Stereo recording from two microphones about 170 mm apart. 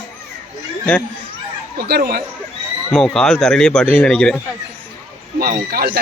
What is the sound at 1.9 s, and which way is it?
Speech, 60° right (ahead or behind).